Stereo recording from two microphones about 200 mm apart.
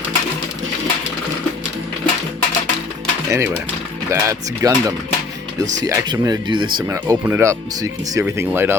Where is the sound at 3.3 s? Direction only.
15° right (ahead or behind).